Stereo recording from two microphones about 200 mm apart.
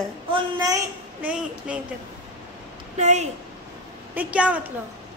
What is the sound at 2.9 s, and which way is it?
Speech, 35° right (ahead or behind).